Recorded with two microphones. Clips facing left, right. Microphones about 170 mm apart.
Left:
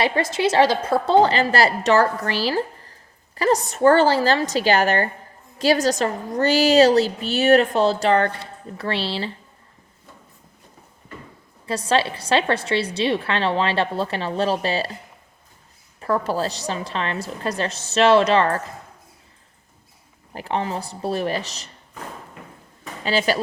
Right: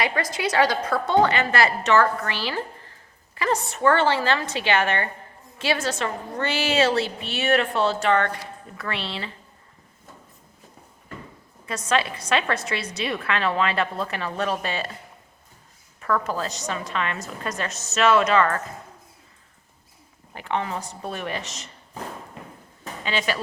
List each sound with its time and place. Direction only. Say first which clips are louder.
0.0 s a woman's voice: left 5 dB; 30° left (ahead or behind)
11.6 s a woman's voice: left 4 dB; 30° left (ahead or behind)
16.0 s a woman's voice: left 3 dB; 30° left (ahead or behind)
20.3 s a woman's voice: left 2 dB; 35° left (ahead or behind)
23.0 s a woman's voice: left 6 dB; 35° left (ahead or behind)